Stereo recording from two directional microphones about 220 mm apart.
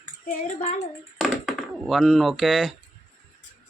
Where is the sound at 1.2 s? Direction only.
Centre (ahead or behind).